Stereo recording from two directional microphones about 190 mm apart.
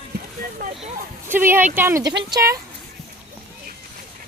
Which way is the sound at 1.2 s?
10° right (ahead or behind).